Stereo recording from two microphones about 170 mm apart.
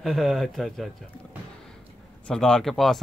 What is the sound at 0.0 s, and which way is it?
Speech, centre (ahead or behind).